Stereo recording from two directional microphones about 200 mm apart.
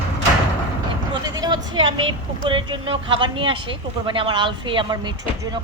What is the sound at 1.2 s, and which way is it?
Vehicle, 20° right (ahead or behind).